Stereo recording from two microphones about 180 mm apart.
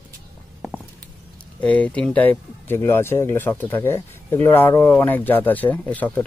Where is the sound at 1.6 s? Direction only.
5° left (ahead or behind).